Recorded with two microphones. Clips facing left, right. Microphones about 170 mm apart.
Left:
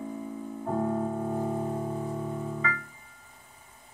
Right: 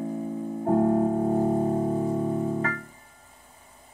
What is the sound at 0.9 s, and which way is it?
Music, 35° right (ahead or behind).